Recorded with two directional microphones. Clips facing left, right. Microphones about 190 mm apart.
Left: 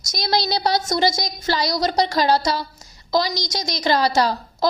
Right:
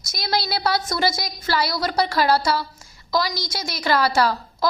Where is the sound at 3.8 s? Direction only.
20° left (ahead or behind).